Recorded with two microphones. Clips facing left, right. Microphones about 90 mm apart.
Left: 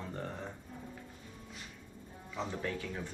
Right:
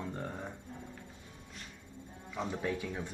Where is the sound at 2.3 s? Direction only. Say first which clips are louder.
Right 2 dB; 10° right (ahead or behind).